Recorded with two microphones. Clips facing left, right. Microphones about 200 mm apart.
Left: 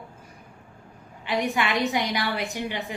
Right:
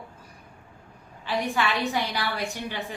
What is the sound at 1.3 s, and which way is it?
A woman's voice, 15° left (ahead or behind).